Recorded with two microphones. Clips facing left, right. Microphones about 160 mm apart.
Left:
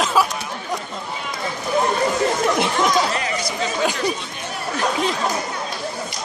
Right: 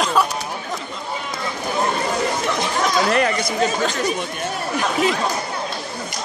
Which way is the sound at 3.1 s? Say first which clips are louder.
Right 5 dB; 55° right (ahead or behind).